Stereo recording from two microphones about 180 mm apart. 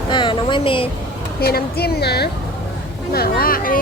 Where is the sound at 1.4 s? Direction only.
60° left (ahead or behind).